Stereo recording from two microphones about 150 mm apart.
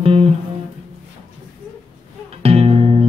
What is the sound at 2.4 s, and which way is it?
Music, 40° right (ahead or behind).